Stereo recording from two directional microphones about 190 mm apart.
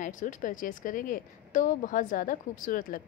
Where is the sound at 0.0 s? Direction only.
45° left (ahead or behind).